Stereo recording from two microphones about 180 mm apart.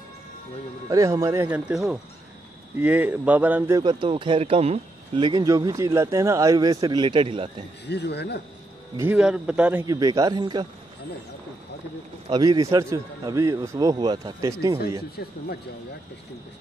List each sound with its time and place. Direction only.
0.8 s a man's voice: 20° right (ahead or behind)
1.7 s a man's voice: 5° right (ahead or behind)
3.8 s a man's voice: 25° right (ahead or behind)
7.8 s speech: 70° left (ahead or behind)
8.9 s a man's voice: 15° right (ahead or behind)
9.9 s a man's voice: 20° right (ahead or behind)
12.3 s a man's voice: 20° right (ahead or behind)
15.2 s speech: 60° left (ahead or behind)